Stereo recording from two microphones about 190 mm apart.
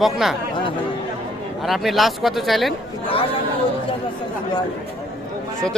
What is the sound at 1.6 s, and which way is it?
Speech, centre (ahead or behind).